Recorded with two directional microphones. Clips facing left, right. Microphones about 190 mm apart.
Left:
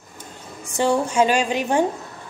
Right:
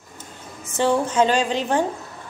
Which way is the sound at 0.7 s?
15° left (ahead or behind).